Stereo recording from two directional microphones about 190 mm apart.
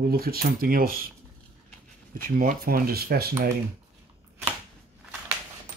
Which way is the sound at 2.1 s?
50° right (ahead or behind).